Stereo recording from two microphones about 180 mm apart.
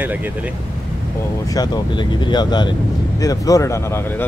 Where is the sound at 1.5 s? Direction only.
25° left (ahead or behind).